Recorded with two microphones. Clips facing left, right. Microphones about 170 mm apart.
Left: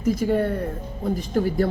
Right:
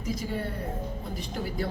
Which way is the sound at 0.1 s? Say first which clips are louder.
Left 11 dB; 55° left (ahead or behind).